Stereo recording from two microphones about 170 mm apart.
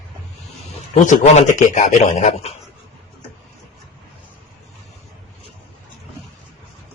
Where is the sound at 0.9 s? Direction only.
50° left (ahead or behind).